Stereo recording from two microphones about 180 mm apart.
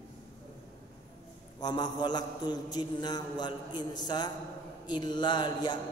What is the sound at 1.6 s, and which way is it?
A man's voice, 25° left (ahead or behind).